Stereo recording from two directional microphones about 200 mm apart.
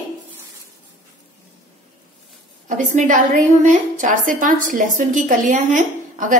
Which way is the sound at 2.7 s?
40° right (ahead or behind).